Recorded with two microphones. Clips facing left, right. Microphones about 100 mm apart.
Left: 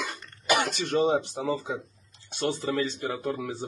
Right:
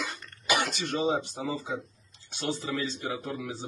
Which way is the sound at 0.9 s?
55° left (ahead or behind).